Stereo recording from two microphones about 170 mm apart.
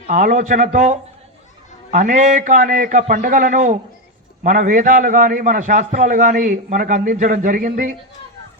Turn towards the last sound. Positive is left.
turn(degrees=-55)  # may be behind; listen again after turning